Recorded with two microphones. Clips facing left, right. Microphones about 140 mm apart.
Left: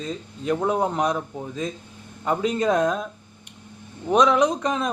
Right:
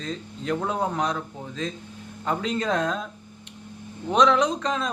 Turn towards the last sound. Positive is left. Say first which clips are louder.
# left 3 dB
turn(degrees=15)  # may be behind; listen again after turning